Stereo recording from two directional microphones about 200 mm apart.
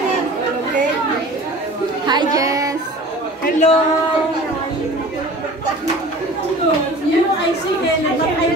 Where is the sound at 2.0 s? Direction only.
20° right (ahead or behind).